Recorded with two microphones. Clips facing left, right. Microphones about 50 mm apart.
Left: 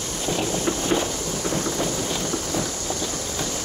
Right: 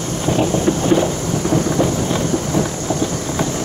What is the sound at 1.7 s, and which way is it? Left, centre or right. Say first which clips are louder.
Thunder: right 8 dB; right.